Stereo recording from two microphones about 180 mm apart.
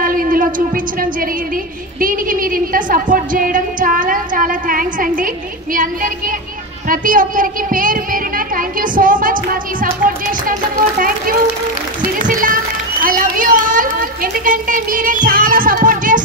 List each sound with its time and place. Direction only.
0.0 s a sound: 50° right (ahead or behind)
2.0 s a woman's voice: 50° right (ahead or behind)
12.3 s music: 50° right (ahead or behind)
13.0 s a woman's voice: 50° right (ahead or behind)